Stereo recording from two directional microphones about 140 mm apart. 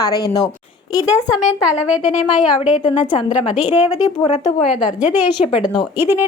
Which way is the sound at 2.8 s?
50° left (ahead or behind).